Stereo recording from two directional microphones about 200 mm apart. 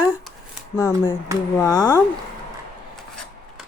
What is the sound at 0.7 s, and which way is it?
Speech, 15° left (ahead or behind).